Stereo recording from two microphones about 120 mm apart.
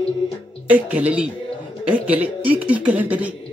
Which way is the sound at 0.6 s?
10° right (ahead or behind).